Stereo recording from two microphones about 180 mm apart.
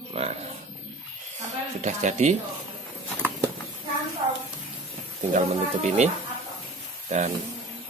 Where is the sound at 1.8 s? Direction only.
40° right (ahead or behind).